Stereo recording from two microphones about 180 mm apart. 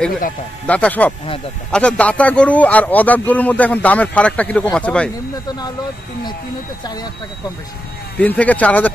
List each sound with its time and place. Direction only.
0.7 s speech: 5° left (ahead or behind)
6.8 s speech: 20° left (ahead or behind)
8.2 s speech: 10° left (ahead or behind)